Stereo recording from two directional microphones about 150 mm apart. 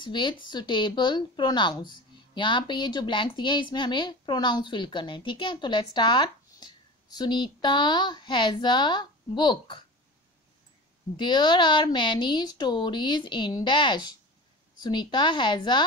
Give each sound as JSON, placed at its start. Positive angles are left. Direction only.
{"t": 0.0, "sound": "a woman's voice", "side_deg": 30}
{"t": 11.1, "sound": "a woman's voice", "side_deg": 30}